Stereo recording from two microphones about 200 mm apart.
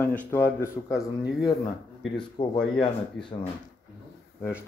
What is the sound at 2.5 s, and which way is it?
Speech, 5° left (ahead or behind).